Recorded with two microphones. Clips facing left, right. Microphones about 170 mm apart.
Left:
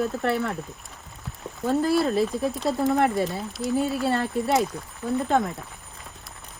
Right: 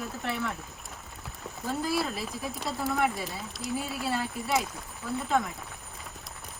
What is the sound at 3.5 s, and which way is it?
Speech, centre (ahead or behind).